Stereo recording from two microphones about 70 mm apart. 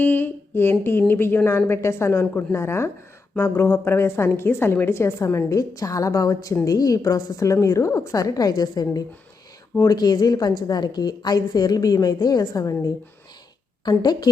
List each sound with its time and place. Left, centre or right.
0.0 s a woman's voice: left
13.8 s a woman's voice: left